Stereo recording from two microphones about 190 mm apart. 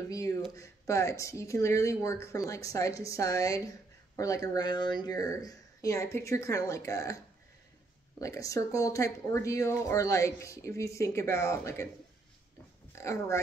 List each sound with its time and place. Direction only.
0.6 s speech: 15° left (ahead or behind)
8.2 s speech: 15° left (ahead or behind)
12.9 s speech: 15° left (ahead or behind)